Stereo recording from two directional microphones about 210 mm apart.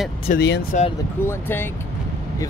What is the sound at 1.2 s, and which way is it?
Speech, 10° left (ahead or behind).